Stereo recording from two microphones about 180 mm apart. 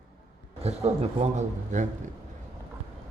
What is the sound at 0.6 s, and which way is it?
A man's voice, 35° right (ahead or behind).